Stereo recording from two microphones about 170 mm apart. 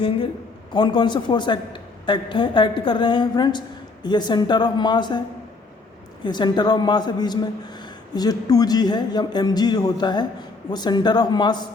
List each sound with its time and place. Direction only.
0.7 s a man's voice: 25° left (ahead or behind)
6.2 s a man's voice: 25° left (ahead or behind)